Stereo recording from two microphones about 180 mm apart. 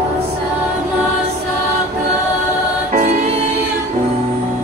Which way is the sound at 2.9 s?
40° right (ahead or behind).